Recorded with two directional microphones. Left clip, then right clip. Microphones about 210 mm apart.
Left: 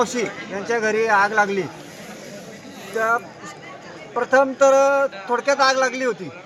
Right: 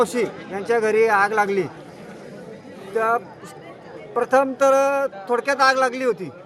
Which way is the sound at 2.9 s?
25° right (ahead or behind).